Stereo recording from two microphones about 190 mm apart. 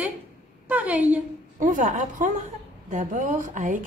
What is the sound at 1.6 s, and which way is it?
A woman's voice, 45° right (ahead or behind).